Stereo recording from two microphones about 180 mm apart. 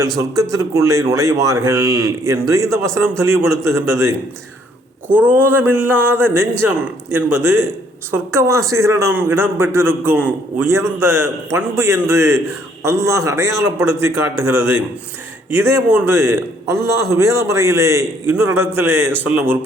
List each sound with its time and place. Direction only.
0.5 s a man's voice: 15° right (ahead or behind)